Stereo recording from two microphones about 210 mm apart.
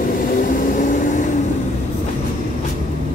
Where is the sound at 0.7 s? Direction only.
40° left (ahead or behind).